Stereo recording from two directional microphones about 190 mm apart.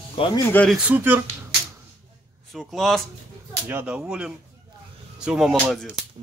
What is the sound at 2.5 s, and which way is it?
Speech, centre (ahead or behind).